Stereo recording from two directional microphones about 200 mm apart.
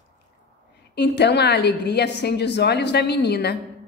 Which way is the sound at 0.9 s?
60° left (ahead or behind).